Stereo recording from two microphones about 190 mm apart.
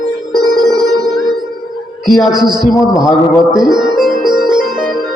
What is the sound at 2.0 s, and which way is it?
Speech, centre (ahead or behind).